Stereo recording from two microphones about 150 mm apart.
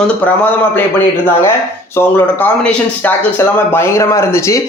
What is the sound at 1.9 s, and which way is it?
Speech, 10° left (ahead or behind).